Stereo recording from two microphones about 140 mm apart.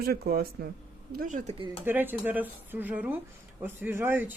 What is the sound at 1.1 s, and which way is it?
Speech, 65° right (ahead or behind).